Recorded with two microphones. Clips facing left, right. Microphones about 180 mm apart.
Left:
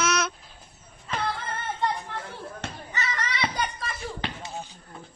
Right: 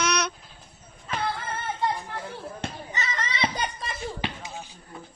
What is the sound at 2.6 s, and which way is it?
Basketball bounce, 20° right (ahead or behind).